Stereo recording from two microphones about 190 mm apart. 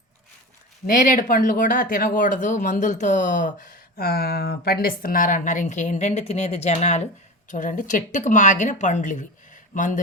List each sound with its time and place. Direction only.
0.9 s speech: 45° left (ahead or behind)